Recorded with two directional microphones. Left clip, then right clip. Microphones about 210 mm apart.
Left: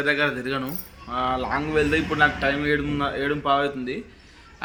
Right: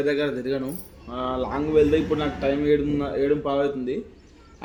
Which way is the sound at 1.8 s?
15° left (ahead or behind).